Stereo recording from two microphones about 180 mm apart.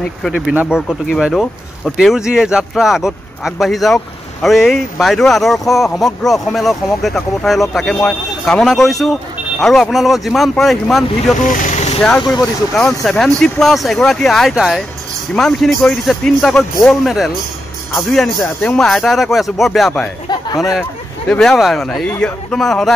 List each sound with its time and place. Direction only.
0.2 s speech: centre (ahead or behind)
11.4 s vehicle: 45° left (ahead or behind)
12.3 s speech: centre (ahead or behind)
20.2 s speech: 25° left (ahead or behind)
21.3 s speech: 5° left (ahead or behind)